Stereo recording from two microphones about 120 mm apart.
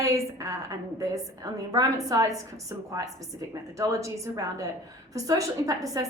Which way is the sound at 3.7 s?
25° right (ahead or behind).